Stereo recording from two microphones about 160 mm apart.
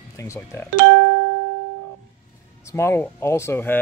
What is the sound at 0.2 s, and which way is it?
Speech, 15° left (ahead or behind).